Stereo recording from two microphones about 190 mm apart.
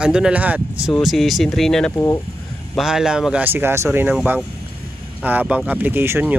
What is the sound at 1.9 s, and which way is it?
Speech, 15° left (ahead or behind).